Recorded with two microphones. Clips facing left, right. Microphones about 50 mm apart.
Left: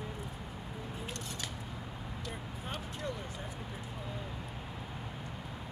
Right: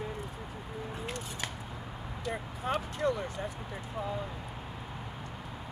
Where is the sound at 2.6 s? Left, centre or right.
Right.